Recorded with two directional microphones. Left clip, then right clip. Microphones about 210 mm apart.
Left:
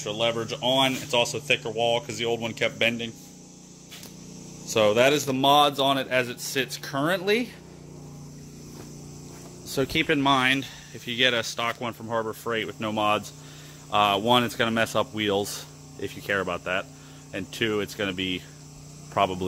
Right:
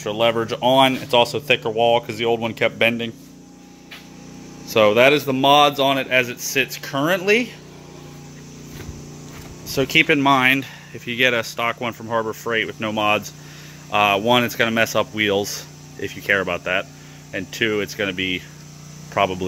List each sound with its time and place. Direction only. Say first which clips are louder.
0.0 s speech: right 7 dB; 20° right (ahead or behind)
4.6 s speech: right 6 dB; 5° right (ahead or behind)
9.8 s speech: right 8 dB; 10° right (ahead or behind)